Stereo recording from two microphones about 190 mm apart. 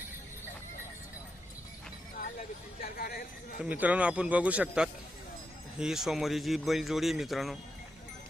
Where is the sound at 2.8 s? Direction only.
50° left (ahead or behind).